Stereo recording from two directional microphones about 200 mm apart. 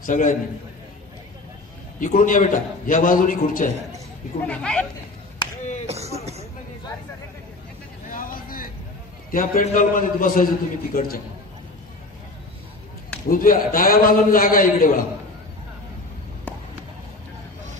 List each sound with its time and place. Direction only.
0.0 s a man's voice: 40° left (ahead or behind)
2.0 s a man's voice: 40° left (ahead or behind)
4.5 s a woman's voice: 5° left (ahead or behind)
5.9 s a sound: 30° right (ahead or behind)
8.1 s vehicle: 45° left (ahead or behind)
9.3 s a man's voice: 45° left (ahead or behind)
13.3 s a man's voice: 45° left (ahead or behind)